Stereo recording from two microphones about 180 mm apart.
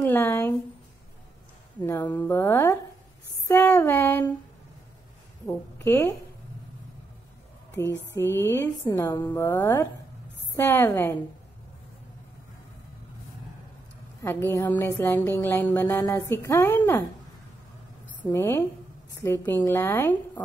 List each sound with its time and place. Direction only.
0.0 s a sound: 15° left (ahead or behind)
2.0 s speech: 10° left (ahead or behind)
3.4 s a sound: 15° left (ahead or behind)
5.9 s speech: 15° left (ahead or behind)
8.2 s speech: 15° left (ahead or behind)
14.2 s speech: 10° left (ahead or behind)
18.3 s speech: 15° left (ahead or behind)